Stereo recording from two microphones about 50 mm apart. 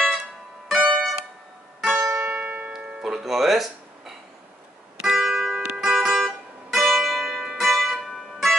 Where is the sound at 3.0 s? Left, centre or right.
Centre.